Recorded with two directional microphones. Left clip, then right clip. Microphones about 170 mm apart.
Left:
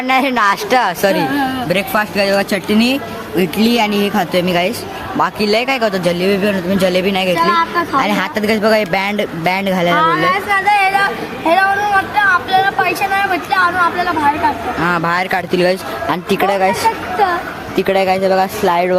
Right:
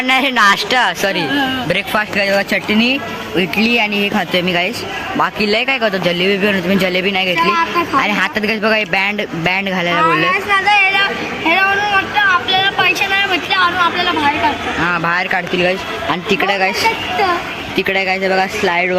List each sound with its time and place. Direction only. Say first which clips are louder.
0.1 s a woman's voice: right 1 dB; 5° left (ahead or behind)
6.1 s a man's voice: right 1 dB; 5° right (ahead or behind)
10.0 s speech: even; 10° left (ahead or behind)
15.5 s speech: left 2 dB; 35° left (ahead or behind)
16.0 s speech: left 1 dB; 15° left (ahead or behind)
17.7 s speech: left 2 dB; 15° left (ahead or behind)